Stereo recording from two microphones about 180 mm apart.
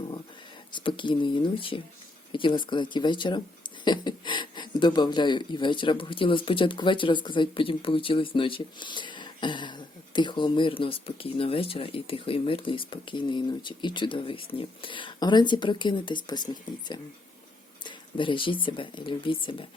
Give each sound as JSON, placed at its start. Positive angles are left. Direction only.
{"t": 0.7, "sound": "speech", "side_deg": 25}